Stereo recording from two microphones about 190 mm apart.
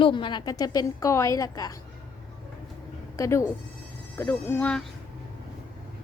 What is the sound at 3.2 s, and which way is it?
Insect, 15° left (ahead or behind).